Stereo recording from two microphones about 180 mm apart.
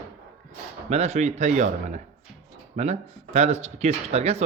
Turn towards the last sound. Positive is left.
turn(degrees=-35)  # may be behind; listen again after turning